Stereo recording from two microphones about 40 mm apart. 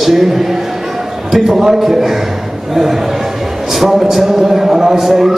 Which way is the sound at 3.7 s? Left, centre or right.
Centre.